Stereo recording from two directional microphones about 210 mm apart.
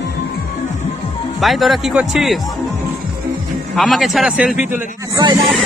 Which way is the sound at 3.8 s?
Centre (ahead or behind).